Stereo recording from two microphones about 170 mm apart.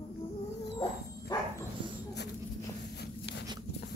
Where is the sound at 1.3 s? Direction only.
25° left (ahead or behind).